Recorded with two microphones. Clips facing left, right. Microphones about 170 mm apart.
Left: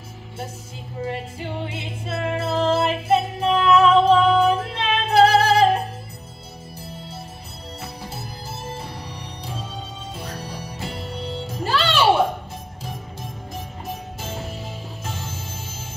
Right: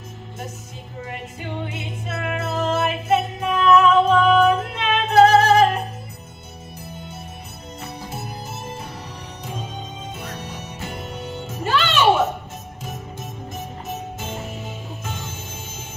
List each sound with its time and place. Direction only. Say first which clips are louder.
1.7 s music: left 1 dB; 30° left (ahead or behind)
6.9 s music: even; 30° left (ahead or behind)
10.2 s music: even; 35° left (ahead or behind)
13.8 s music: right 2 dB; 35° left (ahead or behind)